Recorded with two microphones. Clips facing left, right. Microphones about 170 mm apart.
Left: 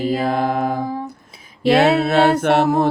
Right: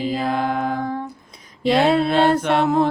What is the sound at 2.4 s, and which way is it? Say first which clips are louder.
A capella: left 3 dB; 65° left (ahead or behind).